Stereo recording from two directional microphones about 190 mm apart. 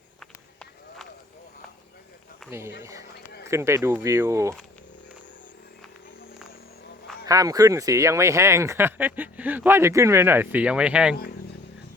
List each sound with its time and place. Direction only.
0.2 s run: centre (ahead or behind)
2.5 s speech: 15° right (ahead or behind)
7.3 s speech: 20° right (ahead or behind)